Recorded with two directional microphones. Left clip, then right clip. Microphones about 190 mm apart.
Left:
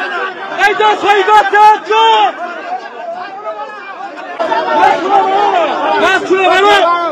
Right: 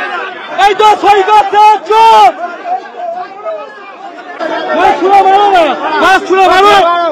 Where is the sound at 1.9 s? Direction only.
20° right (ahead or behind).